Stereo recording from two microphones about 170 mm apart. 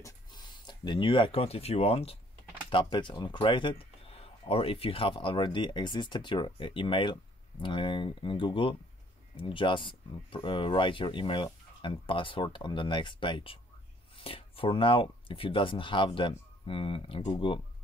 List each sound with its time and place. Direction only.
0.0 s speech: 25° left (ahead or behind)